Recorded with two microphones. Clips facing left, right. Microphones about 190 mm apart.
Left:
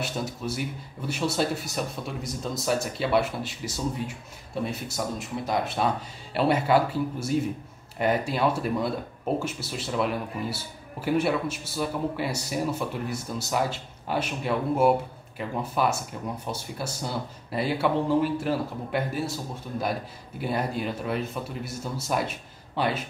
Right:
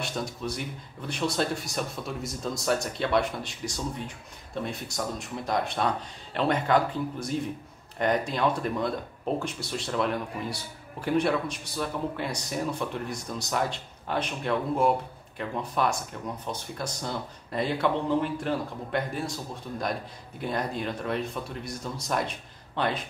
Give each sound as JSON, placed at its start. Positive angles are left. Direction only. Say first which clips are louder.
{"t": 0.0, "sound": "speech", "louder": "left 1 dB", "side_deg": 5}